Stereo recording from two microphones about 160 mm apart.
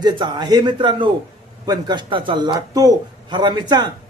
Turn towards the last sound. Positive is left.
turn(degrees=-25)  # may be behind; listen again after turning